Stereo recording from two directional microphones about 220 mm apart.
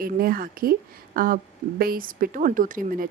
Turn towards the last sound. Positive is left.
turn(degrees=-40)  # may be behind; listen again after turning